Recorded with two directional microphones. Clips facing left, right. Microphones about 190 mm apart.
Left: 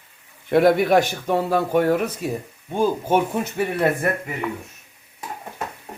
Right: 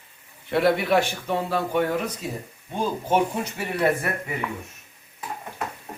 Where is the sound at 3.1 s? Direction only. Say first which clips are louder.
Left 2 dB; 50° left (ahead or behind).